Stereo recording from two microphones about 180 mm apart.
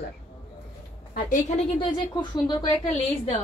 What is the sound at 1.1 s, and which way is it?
Speech, 45° left (ahead or behind).